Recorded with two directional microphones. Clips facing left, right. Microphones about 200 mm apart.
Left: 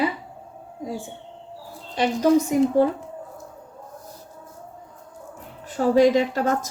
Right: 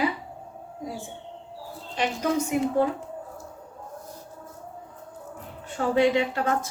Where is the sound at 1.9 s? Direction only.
35° left (ahead or behind).